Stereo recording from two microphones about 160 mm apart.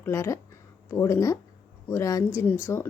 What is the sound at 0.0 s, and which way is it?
Speech, 20° left (ahead or behind).